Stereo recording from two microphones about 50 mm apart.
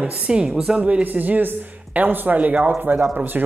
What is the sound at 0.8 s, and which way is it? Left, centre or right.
Speech, right.